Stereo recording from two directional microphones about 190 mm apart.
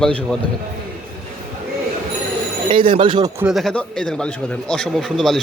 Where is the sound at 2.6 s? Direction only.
25° right (ahead or behind).